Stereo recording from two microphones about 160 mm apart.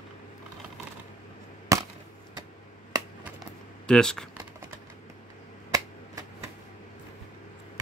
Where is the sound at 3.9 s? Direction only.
5° left (ahead or behind).